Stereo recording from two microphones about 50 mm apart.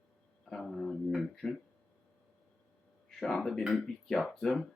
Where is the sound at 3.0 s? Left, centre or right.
Centre.